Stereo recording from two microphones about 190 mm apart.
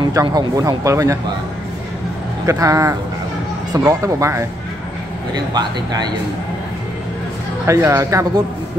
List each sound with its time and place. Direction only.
0.0 s speech: 20° right (ahead or behind)
2.4 s speech: 15° right (ahead or behind)
7.6 s speech: 15° right (ahead or behind)